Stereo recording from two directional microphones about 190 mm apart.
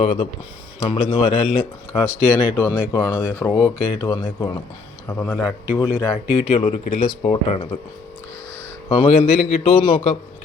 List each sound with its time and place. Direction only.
0.0 s speech: 35° left (ahead or behind)
1.9 s speech: 15° left (ahead or behind)
6.5 s speech: 35° left (ahead or behind)
8.9 s speech: 30° left (ahead or behind)